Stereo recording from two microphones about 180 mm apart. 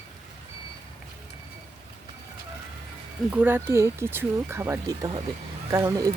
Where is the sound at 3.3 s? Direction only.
10° right (ahead or behind).